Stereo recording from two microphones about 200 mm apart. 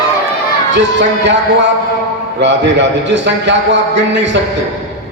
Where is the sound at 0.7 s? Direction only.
65° right (ahead or behind).